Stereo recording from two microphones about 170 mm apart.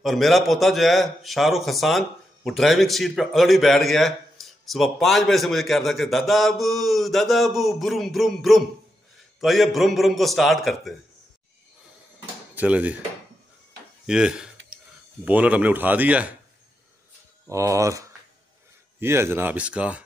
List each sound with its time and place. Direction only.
0.0 s a man's voice: centre (ahead or behind)
12.5 s speech: 10° right (ahead or behind)
14.0 s a man's voice: 5° right (ahead or behind)
17.5 s speech: 20° right (ahead or behind)